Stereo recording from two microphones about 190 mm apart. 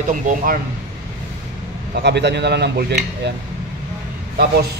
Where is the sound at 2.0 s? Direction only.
65° right (ahead or behind).